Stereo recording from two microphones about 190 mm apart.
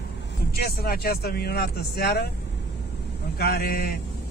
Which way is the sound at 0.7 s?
55° left (ahead or behind).